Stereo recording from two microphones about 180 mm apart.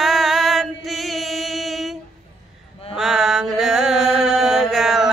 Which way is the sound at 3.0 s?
Centre (ahead or behind).